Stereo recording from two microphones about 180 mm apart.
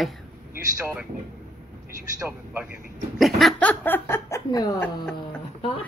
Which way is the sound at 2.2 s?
10° right (ahead or behind).